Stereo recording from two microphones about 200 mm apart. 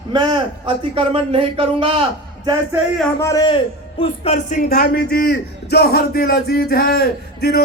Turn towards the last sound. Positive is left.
turn(degrees=50)  # may be behind; listen again after turning